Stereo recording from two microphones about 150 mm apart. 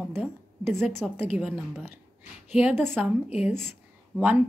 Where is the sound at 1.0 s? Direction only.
5° right (ahead or behind).